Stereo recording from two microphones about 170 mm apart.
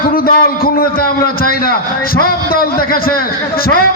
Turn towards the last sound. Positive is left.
turn(degrees=60)  # may be behind; listen again after turning